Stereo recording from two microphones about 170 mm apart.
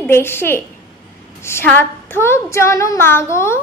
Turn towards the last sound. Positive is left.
turn(degrees=15)  # may be behind; listen again after turning